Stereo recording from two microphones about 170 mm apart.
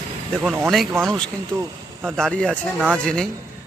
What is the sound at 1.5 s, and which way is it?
Speech, 15° right (ahead or behind).